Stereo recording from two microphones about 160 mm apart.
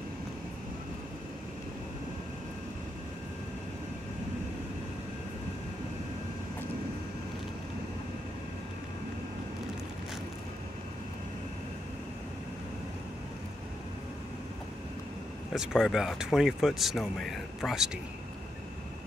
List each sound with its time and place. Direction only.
15.5 s speech: 5° right (ahead or behind)